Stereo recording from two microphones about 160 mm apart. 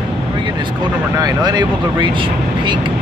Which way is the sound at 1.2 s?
30° right (ahead or behind).